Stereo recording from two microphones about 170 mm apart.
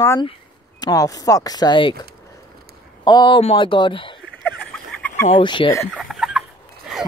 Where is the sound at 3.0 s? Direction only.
25° left (ahead or behind).